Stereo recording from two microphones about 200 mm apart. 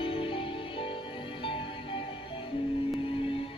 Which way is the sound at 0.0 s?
25° left (ahead or behind).